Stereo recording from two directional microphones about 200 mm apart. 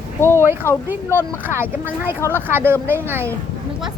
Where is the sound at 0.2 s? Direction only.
10° left (ahead or behind).